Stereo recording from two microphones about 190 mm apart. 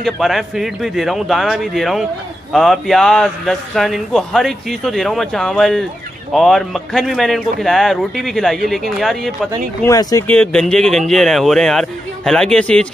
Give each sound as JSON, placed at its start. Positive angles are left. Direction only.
{"t": 0.0, "sound": "a man's voice", "side_deg": 0}
{"t": 9.8, "sound": "speech", "side_deg": 15}
{"t": 10.3, "sound": "a man's voice", "side_deg": 5}